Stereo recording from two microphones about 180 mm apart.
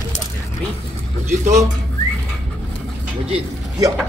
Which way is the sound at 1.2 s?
40° right (ahead or behind).